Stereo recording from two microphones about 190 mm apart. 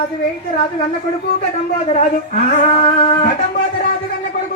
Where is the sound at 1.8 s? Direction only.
35° left (ahead or behind).